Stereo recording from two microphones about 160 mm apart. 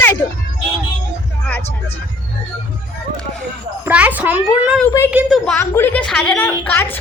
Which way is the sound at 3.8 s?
10° right (ahead or behind).